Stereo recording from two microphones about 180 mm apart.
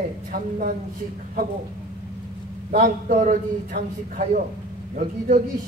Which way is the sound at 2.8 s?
45° right (ahead or behind).